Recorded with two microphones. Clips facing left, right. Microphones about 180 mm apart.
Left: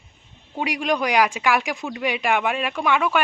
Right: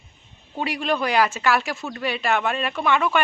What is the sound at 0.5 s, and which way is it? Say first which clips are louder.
Speech: left 1 dB; 10° left (ahead or behind).